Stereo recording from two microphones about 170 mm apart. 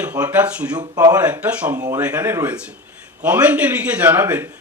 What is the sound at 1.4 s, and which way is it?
Speech, 10° right (ahead or behind).